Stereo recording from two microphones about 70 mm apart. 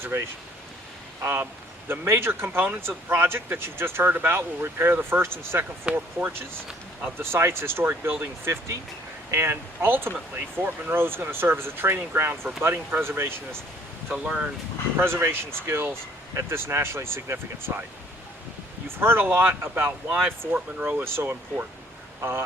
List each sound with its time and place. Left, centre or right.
0.1 s speech: right
1.2 s speech: right
5.8 s speech: right
7.2 s speech: right
14.1 s speech: centre
14.9 s speech: right
18.9 s speech: right